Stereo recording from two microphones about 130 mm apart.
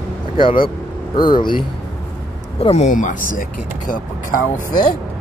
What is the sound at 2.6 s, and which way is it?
Speech, 55° left (ahead or behind).